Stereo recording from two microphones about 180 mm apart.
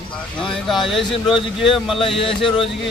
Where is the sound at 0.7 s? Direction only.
Centre (ahead or behind).